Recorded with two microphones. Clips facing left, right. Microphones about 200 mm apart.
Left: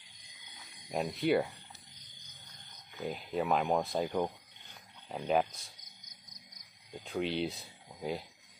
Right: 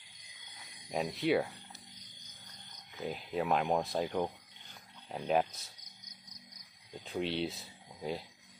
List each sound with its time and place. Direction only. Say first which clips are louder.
0.8 s speech: left 1 dB; centre (ahead or behind)
3.0 s speech: left 1 dB; centre (ahead or behind)
7.0 s speech: left 1 dB; centre (ahead or behind)